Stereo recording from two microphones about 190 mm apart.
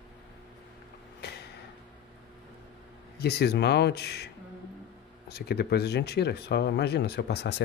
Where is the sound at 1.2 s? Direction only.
60° left (ahead or behind).